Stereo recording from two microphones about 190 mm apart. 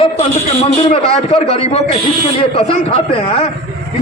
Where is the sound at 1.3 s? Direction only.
30° left (ahead or behind).